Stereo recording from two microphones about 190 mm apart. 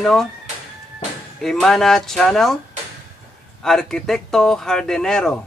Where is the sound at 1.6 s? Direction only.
Centre (ahead or behind).